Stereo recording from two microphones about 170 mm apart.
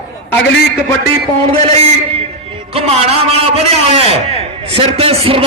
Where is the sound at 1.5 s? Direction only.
35° right (ahead or behind).